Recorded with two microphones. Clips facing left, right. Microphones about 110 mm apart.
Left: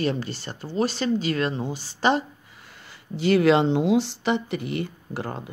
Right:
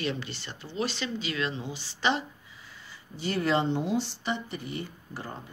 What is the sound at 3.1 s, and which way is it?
Speech, 90° left.